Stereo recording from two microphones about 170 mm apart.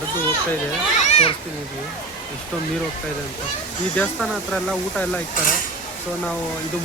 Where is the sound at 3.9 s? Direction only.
5° left (ahead or behind).